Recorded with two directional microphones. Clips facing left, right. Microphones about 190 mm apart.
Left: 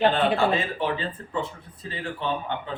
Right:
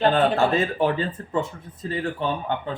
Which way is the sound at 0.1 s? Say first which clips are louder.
Right 2 dB; 45° right (ahead or behind).